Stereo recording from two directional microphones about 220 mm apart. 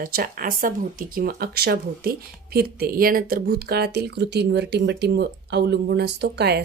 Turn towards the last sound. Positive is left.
turn(degrees=-50)  # may be behind; listen again after turning